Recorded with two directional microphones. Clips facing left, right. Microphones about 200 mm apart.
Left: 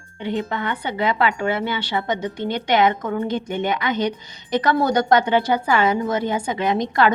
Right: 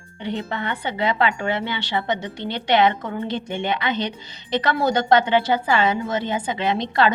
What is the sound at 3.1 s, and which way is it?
Speech, 25° right (ahead or behind).